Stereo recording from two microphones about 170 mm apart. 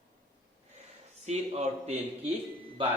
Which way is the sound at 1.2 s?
40° right (ahead or behind).